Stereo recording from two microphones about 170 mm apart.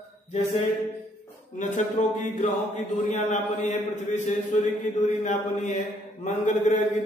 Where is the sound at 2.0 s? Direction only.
45° left (ahead or behind).